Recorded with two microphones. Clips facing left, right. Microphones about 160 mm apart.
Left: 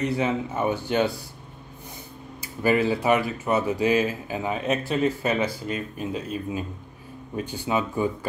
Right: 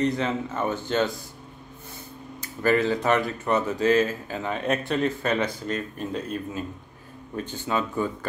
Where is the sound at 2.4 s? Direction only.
10° left (ahead or behind).